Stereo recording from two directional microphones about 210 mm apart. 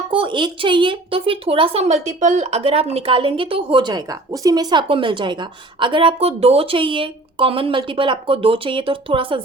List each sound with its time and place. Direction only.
0.1 s speech: 25° right (ahead or behind)